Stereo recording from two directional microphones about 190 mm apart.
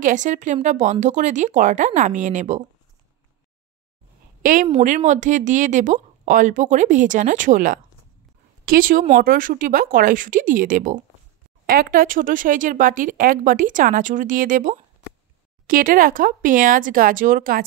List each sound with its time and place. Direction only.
0.0 s speech: 40° right (ahead or behind)
4.4 s a woman's voice: 45° right (ahead or behind)